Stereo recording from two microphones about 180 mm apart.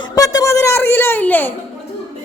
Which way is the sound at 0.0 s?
20° left (ahead or behind).